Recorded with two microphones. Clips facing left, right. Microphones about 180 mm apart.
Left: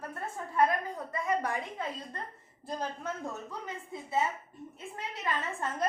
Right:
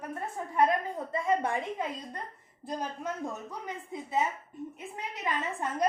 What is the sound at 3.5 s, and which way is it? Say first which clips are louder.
A woman's voice: right 2 dB; 15° right (ahead or behind).